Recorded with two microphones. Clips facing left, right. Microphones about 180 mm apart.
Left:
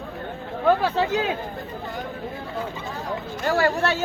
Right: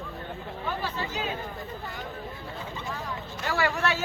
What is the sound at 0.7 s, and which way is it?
Speech, 75° left (ahead or behind).